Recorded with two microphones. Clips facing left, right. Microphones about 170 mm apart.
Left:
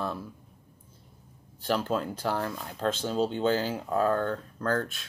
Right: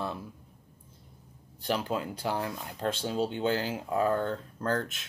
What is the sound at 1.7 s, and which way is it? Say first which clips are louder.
Speech: left 2 dB; 15° right (ahead or behind).